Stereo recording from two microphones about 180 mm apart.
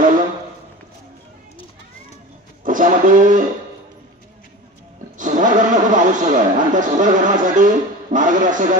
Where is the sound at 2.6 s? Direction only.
45° right (ahead or behind).